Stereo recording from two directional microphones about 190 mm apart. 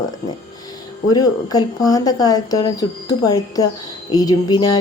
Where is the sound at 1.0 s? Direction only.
20° left (ahead or behind).